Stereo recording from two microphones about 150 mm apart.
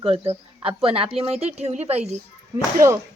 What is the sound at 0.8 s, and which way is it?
A woman's voice, 40° right (ahead or behind).